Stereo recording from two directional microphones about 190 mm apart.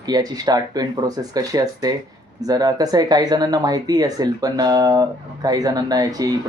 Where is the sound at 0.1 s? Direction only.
20° right (ahead or behind).